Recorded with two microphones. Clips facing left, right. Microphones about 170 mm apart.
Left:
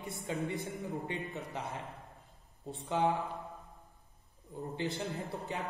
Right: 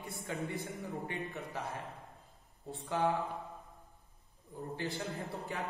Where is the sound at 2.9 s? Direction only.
20° left (ahead or behind).